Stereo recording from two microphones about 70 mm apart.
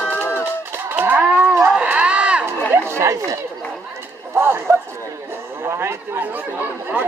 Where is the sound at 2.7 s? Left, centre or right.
Right.